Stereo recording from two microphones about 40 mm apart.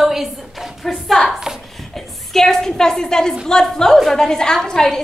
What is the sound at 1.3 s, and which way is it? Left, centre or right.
Speech, centre.